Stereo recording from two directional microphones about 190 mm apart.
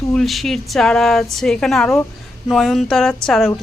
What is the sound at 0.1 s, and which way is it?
Speech, centre (ahead or behind).